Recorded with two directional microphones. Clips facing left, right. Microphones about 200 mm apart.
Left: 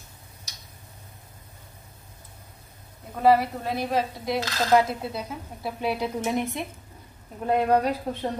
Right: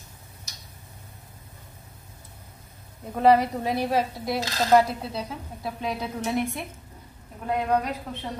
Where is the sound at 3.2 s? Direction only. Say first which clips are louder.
Right 1 dB; 20° right (ahead or behind).